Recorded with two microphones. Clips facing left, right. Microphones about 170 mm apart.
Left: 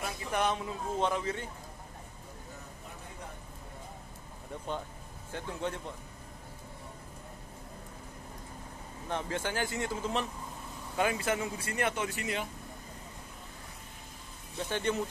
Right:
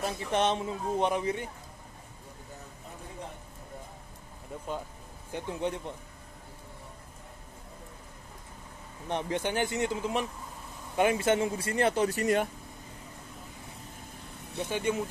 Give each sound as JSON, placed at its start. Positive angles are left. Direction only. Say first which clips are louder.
{"t": 0.0, "sound": "speech", "louder": "right 4 dB", "side_deg": -25}
{"t": 5.3, "sound": "a man's voice", "louder": "right 4 dB", "side_deg": -15}
{"t": 9.1, "sound": "speech", "louder": "right 4 dB", "side_deg": -20}
{"t": 14.7, "sound": "a man's voice", "louder": "right 1 dB", "side_deg": -10}